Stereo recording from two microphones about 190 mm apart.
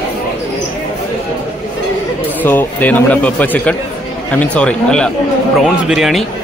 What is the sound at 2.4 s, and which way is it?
Speech, 10° left (ahead or behind).